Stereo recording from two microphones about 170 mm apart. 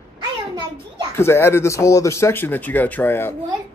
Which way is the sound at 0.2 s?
25° right (ahead or behind).